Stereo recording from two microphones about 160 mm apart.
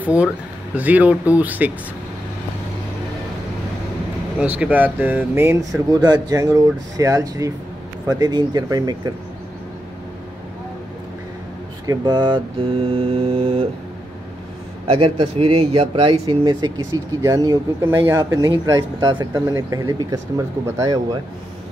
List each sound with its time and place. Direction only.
0.0 s speech: 10° right (ahead or behind)
4.4 s speech: 5° right (ahead or behind)
5.9 s speech: 25° right (ahead or behind)
11.8 s mantra: 25° right (ahead or behind)
14.9 s speech: 35° right (ahead or behind)